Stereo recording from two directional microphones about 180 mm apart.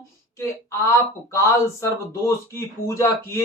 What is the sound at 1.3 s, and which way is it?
Speech, 15° left (ahead or behind).